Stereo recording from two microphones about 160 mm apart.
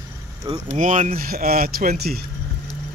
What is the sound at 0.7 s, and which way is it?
Speech, 55° right (ahead or behind).